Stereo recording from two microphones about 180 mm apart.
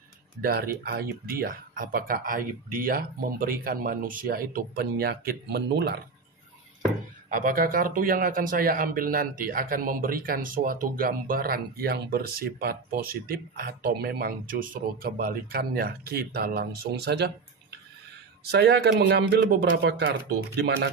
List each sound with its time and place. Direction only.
0.4 s speech: 55° right (ahead or behind)
7.2 s speech: 50° right (ahead or behind); by 17.3 s 70° right (ahead or behind)
18.5 s speech: 65° right (ahead or behind)